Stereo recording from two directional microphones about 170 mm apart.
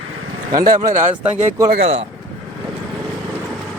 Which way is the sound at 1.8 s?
35° right (ahead or behind).